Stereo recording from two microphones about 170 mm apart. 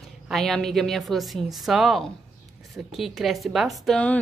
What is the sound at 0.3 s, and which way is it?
Speech, centre (ahead or behind).